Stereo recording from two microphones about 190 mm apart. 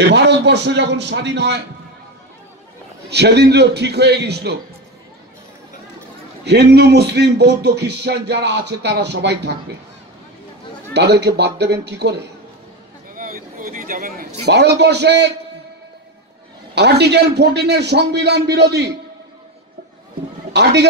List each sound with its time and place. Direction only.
0.1 s music: 65° right (ahead or behind)
3.1 s music: 60° right (ahead or behind)
6.4 s music: 60° right (ahead or behind)
10.9 s music: 60° right (ahead or behind)
13.1 s a man's voice: 45° right (ahead or behind); by 15.3 s 65° right (ahead or behind)
16.7 s music: 60° right (ahead or behind)